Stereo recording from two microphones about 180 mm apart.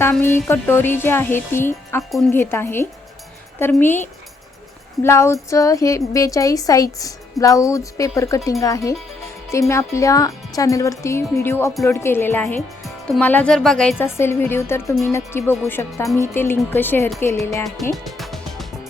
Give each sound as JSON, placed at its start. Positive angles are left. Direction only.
{"t": 0.0, "sound": "a woman's voice", "side_deg": 10}
{"t": 2.0, "sound": "speech", "side_deg": 0}
{"t": 2.3, "sound": "a woman's voice", "side_deg": 10}
{"t": 17.9, "sound": "music", "side_deg": 0}